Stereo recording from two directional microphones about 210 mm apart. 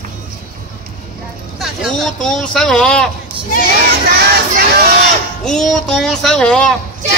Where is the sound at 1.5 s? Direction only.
Centre (ahead or behind).